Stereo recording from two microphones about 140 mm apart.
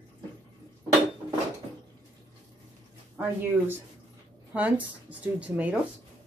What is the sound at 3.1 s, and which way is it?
Speech, 15° right (ahead or behind).